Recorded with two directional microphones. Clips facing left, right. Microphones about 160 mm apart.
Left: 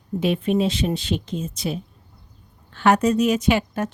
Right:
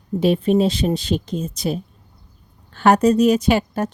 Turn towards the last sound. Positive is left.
turn(degrees=-35)  # may be behind; listen again after turning